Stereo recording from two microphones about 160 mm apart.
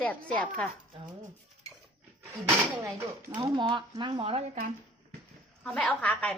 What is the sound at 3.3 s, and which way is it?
Speech, 25° right (ahead or behind).